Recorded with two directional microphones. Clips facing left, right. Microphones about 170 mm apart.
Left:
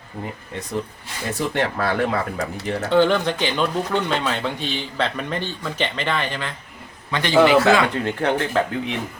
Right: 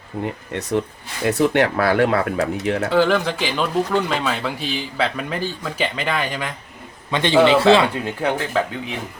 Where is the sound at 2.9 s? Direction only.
5° right (ahead or behind).